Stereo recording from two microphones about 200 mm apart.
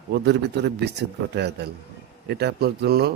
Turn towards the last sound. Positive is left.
turn(degrees=-55)  # may be behind; listen again after turning